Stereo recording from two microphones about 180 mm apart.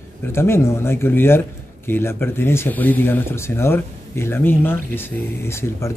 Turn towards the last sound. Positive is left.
turn(degrees=15)  # may be behind; listen again after turning